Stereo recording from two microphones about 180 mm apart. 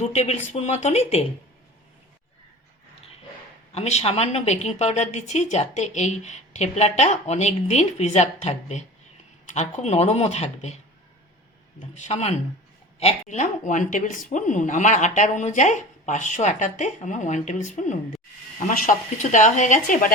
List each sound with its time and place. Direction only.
0.0 s a woman's voice: 35° left (ahead or behind)
3.7 s a woman's voice: 35° left (ahead or behind)
11.8 s a woman's voice: 40° left (ahead or behind)
19.1 s speech: 45° left (ahead or behind)